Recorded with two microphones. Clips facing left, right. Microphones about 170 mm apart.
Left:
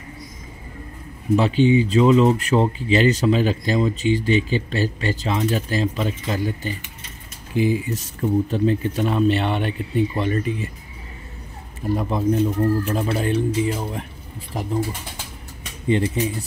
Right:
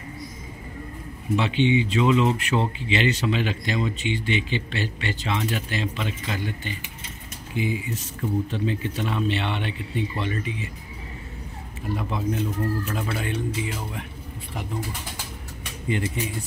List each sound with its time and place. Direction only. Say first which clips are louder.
1.3 s speech: left 5 dB; 40° left (ahead or behind)
11.9 s speech: left 7 dB; 40° left (ahead or behind)
15.9 s speech: left 7 dB; 35° left (ahead or behind)